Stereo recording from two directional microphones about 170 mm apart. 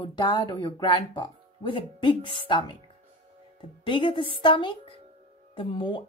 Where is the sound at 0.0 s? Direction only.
25° left (ahead or behind).